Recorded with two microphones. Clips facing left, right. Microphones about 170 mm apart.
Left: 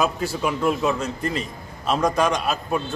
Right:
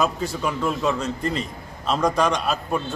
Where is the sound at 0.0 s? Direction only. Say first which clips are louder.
Left 1 dB; 10° left (ahead or behind).